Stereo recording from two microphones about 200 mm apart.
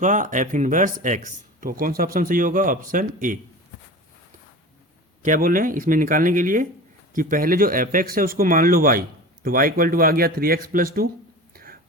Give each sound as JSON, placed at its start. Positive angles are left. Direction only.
{"t": 0.0, "sound": "speech", "side_deg": -40}
{"t": 5.2, "sound": "speech", "side_deg": -40}
{"t": 11.5, "sound": "a sound", "side_deg": -45}